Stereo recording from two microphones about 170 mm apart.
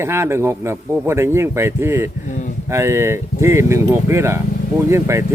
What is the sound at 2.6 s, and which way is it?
Speech, 15° right (ahead or behind).